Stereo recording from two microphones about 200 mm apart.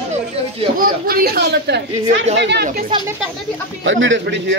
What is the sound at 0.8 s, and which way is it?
Speech, 45° right (ahead or behind).